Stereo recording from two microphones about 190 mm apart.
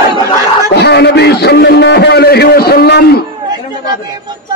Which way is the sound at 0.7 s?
60° left (ahead or behind).